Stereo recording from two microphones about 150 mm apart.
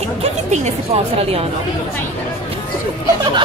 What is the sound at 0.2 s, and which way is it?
A woman's voice, 45° right (ahead or behind).